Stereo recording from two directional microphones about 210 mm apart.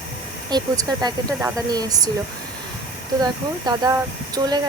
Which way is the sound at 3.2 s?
20° right (ahead or behind).